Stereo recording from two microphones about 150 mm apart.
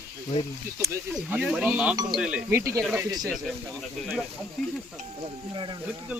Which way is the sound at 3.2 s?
Centre (ahead or behind).